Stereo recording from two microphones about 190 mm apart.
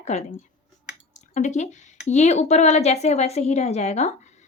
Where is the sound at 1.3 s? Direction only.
40° left (ahead or behind).